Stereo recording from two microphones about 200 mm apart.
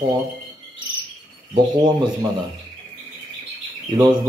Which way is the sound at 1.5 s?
20° right (ahead or behind).